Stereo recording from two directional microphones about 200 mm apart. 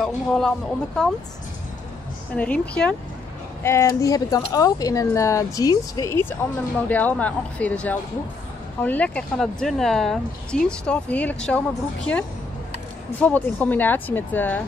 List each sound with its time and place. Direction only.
0.0 s speech: centre (ahead or behind)
2.3 s speech: 5° left (ahead or behind)
13.2 s speech: 10° left (ahead or behind)